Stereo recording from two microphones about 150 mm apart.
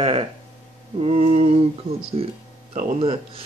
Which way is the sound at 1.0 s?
40° right (ahead or behind).